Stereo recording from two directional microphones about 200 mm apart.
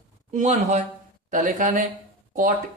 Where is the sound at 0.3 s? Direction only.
35° right (ahead or behind).